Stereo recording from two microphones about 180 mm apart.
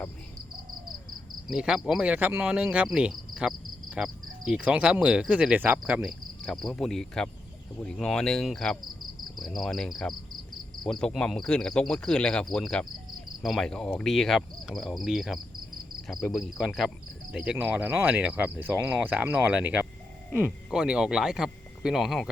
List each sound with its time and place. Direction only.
1.5 s speech: 5° right (ahead or behind)